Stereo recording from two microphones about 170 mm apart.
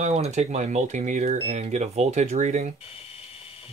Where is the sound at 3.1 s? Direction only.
35° left (ahead or behind).